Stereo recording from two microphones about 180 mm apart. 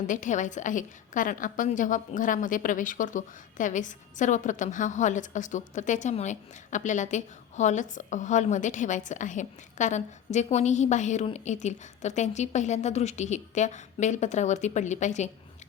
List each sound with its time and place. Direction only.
0.1 s a woman's voice: 45° left (ahead or behind)